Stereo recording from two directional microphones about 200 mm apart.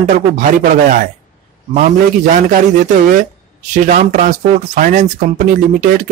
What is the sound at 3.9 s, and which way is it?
Speech, 40° right (ahead or behind).